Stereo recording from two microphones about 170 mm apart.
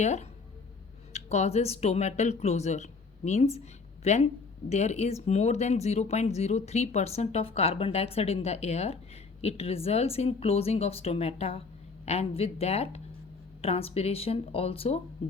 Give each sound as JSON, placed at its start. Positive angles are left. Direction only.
{"t": 0.0, "sound": "speech", "side_deg": 40}